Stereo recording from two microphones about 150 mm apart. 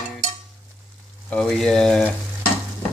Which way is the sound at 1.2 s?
5° left (ahead or behind).